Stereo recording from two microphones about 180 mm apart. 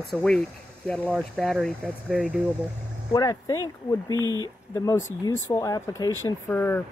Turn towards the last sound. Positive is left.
turn(degrees=10)  # may be behind; listen again after turning